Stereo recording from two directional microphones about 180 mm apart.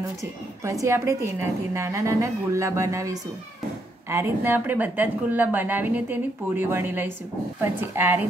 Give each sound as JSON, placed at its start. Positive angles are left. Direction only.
{"t": 0.2, "sound": "a woman's voice", "side_deg": -15}